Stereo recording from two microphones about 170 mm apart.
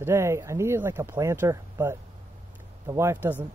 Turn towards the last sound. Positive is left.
turn(degrees=-10)  # may be behind; listen again after turning